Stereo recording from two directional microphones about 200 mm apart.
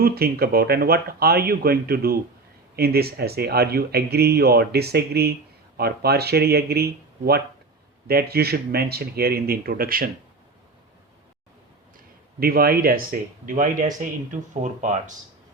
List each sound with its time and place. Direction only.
0.0 s speech: 50° right (ahead or behind)
11.9 s speech: 50° right (ahead or behind)